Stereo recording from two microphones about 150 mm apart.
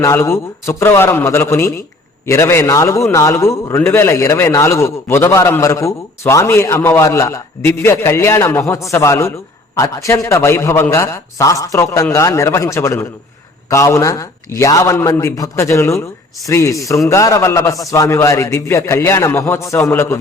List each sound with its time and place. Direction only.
0.0 s a man's voice: 15° left (ahead or behind)